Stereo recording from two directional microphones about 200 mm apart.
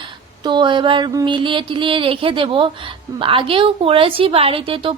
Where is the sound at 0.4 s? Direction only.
25° right (ahead or behind).